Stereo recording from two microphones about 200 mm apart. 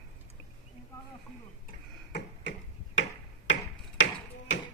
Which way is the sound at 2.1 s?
55° left (ahead or behind).